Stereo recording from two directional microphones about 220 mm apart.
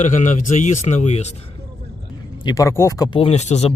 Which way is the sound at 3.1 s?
25° left (ahead or behind).